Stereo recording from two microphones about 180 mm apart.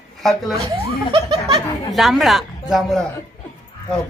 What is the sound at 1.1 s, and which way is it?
Speech, 25° right (ahead or behind).